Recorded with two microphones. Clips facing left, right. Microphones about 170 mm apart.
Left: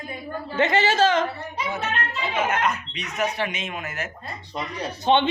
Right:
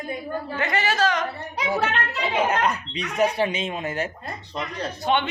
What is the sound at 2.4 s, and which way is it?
Speech, 35° right (ahead or behind).